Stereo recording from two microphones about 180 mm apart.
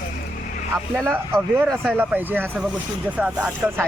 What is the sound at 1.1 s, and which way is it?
Speech, 10° right (ahead or behind).